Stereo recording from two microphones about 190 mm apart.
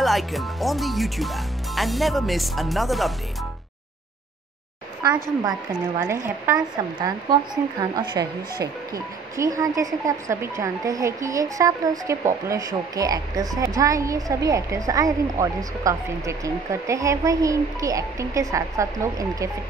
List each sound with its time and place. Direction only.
0.0 s speech: centre (ahead or behind)
5.7 s speech: 10° right (ahead or behind)